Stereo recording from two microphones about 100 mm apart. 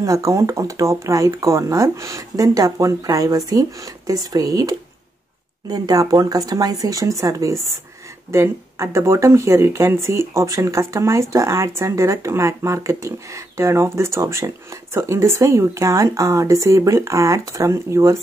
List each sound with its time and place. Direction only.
0.0 s speech: 35° right (ahead or behind)